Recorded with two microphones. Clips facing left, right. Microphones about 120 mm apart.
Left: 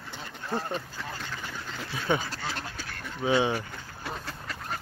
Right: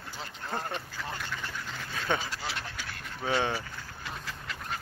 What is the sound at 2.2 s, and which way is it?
Duck, 40° left (ahead or behind).